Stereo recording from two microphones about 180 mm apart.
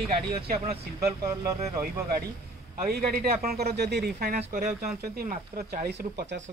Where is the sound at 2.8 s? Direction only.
55° right (ahead or behind).